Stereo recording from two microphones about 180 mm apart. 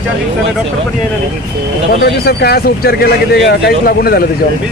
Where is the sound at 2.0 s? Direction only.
60° left (ahead or behind).